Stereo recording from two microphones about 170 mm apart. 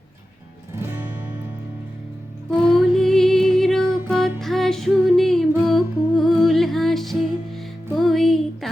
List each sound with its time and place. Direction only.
2.6 s music: centre (ahead or behind)